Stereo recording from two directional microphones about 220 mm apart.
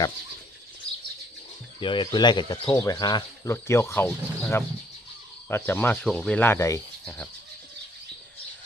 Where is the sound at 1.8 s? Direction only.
20° left (ahead or behind).